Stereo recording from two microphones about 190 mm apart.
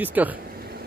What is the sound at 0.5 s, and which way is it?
Dog, 55° right (ahead or behind).